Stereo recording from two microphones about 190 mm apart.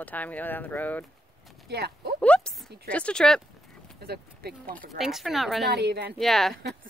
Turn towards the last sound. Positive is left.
turn(degrees=0)  # may be behind; listen again after turning